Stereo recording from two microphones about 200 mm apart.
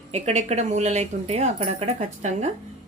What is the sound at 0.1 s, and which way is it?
A woman's voice, 35° right (ahead or behind).